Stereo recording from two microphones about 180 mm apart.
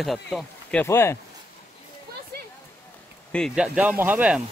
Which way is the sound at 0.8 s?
15° left (ahead or behind).